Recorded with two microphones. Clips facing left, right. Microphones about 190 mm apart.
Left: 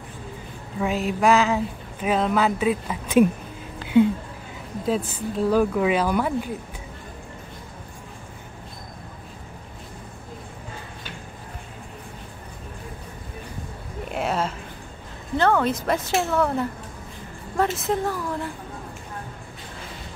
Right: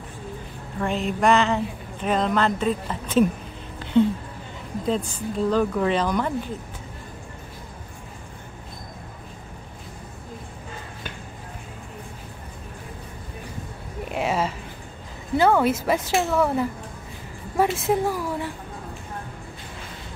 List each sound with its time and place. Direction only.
0.7 s speech: 5° left (ahead or behind)
14.1 s a sound: centre (ahead or behind)
15.3 s a woman's voice: 10° right (ahead or behind)
17.9 s a woman's voice: 10° right (ahead or behind)